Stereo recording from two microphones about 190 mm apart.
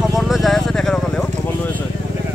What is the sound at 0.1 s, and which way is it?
Vehicle, centre (ahead or behind).